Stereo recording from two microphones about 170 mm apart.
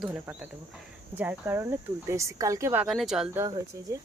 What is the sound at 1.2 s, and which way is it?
Speech, 10° right (ahead or behind).